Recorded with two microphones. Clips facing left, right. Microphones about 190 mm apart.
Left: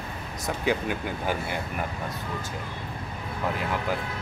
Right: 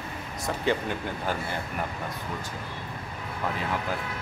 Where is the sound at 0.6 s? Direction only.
10° left (ahead or behind).